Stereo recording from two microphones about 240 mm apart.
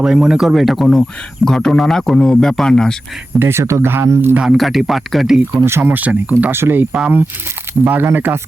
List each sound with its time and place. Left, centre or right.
0.0 s speech: centre
3.3 s speech: centre